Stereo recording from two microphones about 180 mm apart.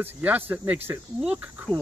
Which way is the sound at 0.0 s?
10° right (ahead or behind).